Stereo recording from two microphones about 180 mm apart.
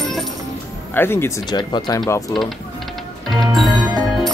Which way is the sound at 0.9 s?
10° left (ahead or behind).